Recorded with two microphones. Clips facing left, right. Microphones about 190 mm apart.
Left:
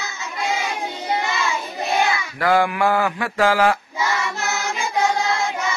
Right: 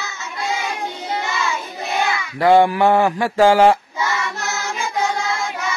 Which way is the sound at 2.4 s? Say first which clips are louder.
Right 6 dB; 25° right (ahead or behind).